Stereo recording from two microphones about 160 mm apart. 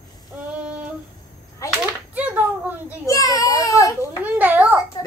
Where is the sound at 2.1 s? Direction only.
10° right (ahead or behind).